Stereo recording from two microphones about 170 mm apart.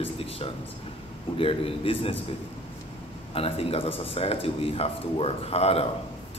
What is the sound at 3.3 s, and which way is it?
Speech, 35° left (ahead or behind).